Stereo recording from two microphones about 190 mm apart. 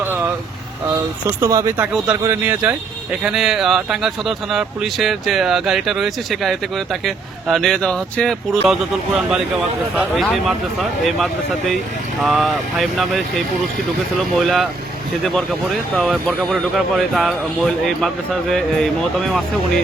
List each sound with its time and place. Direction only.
1.4 s speech: 15° right (ahead or behind); by 19.8 s centre (ahead or behind)